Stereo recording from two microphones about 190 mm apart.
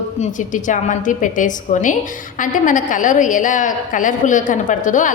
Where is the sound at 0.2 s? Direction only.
40° left (ahead or behind).